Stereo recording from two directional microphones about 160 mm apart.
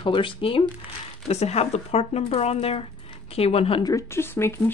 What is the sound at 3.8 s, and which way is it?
Speech, 20° left (ahead or behind).